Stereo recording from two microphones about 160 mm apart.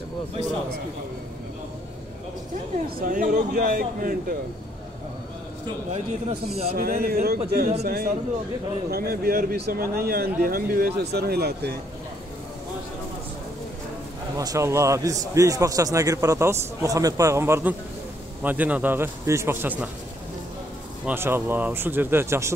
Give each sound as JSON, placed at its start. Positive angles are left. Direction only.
{"t": 3.0, "sound": "speech", "side_deg": -55}
{"t": 6.5, "sound": "a man's voice", "side_deg": -40}
{"t": 6.8, "sound": "a man's voice", "side_deg": -70}
{"t": 14.3, "sound": "a man's voice", "side_deg": -20}
{"t": 21.0, "sound": "a man's voice", "side_deg": -15}